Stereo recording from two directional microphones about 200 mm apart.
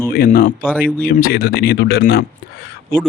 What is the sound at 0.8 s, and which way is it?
Speech, 10° left (ahead or behind).